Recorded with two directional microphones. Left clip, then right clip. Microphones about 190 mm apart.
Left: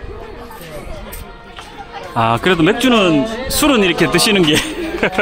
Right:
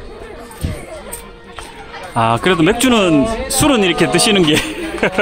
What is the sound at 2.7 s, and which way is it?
Speech, 20° right (ahead or behind).